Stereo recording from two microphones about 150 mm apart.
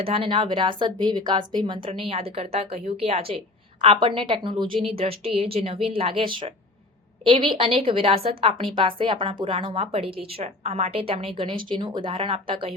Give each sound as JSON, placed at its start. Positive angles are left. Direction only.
{"t": 0.0, "sound": "speech", "side_deg": -40}